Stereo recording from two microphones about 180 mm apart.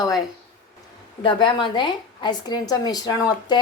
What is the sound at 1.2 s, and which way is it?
A woman's voice, 25° left (ahead or behind).